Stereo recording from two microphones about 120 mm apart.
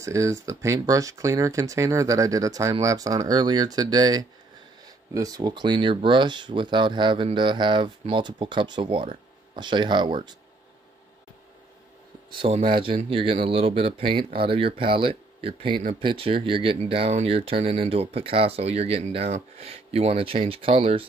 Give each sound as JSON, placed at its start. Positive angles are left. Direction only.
{"t": 0.0, "sound": "speech", "side_deg": -25}
{"t": 12.4, "sound": "speech", "side_deg": -50}